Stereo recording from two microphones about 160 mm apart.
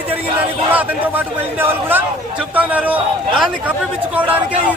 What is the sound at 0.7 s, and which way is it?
A man's voice, 10° right (ahead or behind).